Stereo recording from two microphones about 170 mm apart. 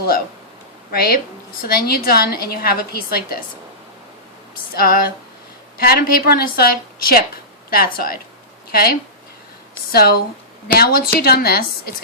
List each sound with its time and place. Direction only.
0.9 s a woman's voice: 60° left (ahead or behind)
4.7 s a woman's voice: 60° left (ahead or behind)